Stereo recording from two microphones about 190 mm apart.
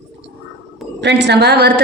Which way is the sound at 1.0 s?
65° right (ahead or behind).